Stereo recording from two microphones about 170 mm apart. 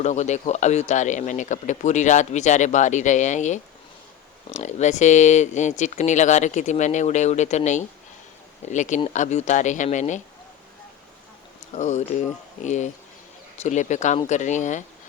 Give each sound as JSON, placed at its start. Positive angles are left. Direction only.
{"t": 0.0, "sound": "speech", "side_deg": 45}
{"t": 11.7, "sound": "speech", "side_deg": 45}